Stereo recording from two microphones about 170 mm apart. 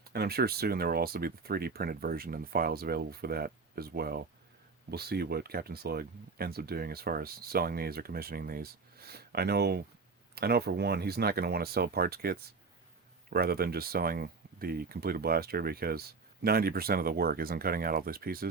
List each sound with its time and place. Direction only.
0.1 s speech: 70° right (ahead or behind)